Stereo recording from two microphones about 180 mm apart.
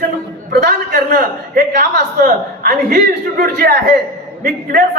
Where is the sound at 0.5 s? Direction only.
60° right (ahead or behind).